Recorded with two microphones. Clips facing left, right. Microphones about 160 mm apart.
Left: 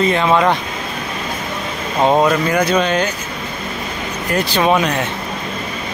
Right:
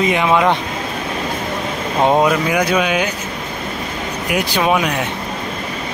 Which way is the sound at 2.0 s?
5° right (ahead or behind).